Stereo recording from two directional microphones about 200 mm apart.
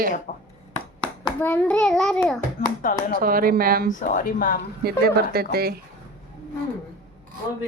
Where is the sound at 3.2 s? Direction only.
45° right (ahead or behind).